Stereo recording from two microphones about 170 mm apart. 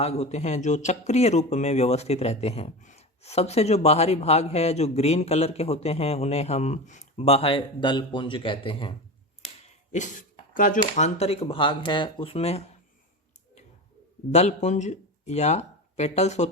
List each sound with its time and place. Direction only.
0.0 s speech: 40° left (ahead or behind)
9.9 s speech: 45° left (ahead or behind)
14.3 s speech: 40° left (ahead or behind)